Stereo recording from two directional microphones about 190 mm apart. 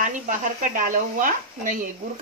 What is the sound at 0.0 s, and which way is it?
Speech, 45° right (ahead or behind).